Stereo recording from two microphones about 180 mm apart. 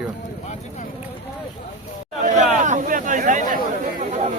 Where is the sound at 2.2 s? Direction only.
45° right (ahead or behind).